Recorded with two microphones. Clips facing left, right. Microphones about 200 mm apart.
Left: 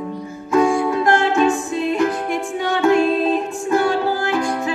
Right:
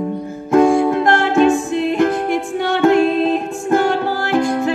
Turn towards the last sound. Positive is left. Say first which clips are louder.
# right 4 dB
turn(degrees=-55)  # may be behind; listen again after turning